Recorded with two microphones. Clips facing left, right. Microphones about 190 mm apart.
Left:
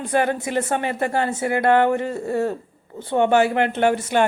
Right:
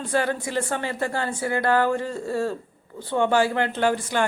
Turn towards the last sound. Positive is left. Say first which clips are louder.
# left 4 dB
turn(degrees=20)  # may be behind; listen again after turning